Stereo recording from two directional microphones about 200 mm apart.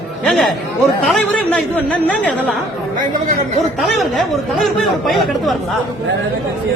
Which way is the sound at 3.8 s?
Centre (ahead or behind).